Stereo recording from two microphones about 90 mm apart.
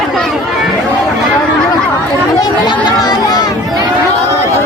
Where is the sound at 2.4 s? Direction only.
50° left (ahead or behind).